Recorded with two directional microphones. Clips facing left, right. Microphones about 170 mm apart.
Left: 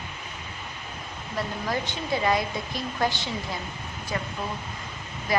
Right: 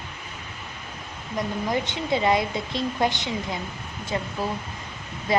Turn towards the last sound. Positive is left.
turn(degrees=-25)  # may be behind; listen again after turning